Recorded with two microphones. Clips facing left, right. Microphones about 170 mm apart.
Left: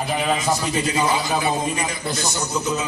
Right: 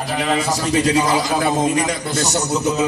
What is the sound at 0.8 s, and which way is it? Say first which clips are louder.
A man's voice: right 4 dB; 90° right.